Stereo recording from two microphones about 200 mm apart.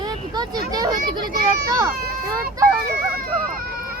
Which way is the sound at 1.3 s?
20° right (ahead or behind).